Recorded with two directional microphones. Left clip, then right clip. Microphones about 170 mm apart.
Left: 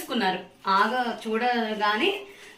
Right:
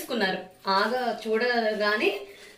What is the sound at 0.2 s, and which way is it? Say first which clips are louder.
A woman's voice: left 2 dB; 15° left (ahead or behind).